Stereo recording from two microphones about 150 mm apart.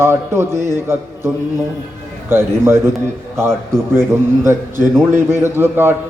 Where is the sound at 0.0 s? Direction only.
15° right (ahead or behind).